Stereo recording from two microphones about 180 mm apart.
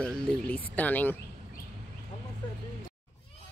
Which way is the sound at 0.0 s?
5° left (ahead or behind).